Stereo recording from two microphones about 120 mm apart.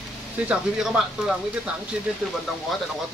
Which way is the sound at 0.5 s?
5° right (ahead or behind).